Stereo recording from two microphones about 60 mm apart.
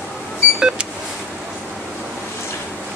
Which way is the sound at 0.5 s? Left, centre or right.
Centre.